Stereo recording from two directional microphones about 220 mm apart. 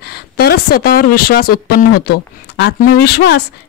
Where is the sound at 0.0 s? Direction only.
45° left (ahead or behind).